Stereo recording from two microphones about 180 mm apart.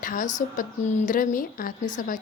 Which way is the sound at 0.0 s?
50° left (ahead or behind).